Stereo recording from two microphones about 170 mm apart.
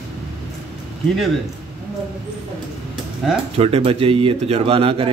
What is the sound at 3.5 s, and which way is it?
A man's voice, 35° right (ahead or behind).